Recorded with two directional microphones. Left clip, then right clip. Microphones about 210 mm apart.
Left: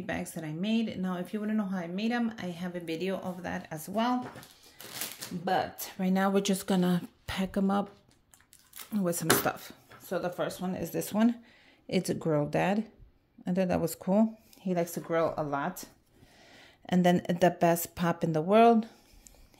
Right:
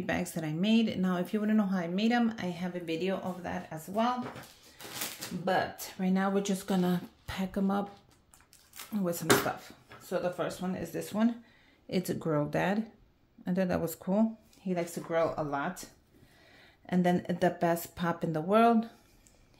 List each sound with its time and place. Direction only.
0.0 s speech: 5° right (ahead or behind)
2.7 s speech: 25° left (ahead or behind); by 4.1 s 45° left (ahead or behind)
5.4 s speech: 45° left (ahead or behind)
11.9 s speech: 25° left (ahead or behind)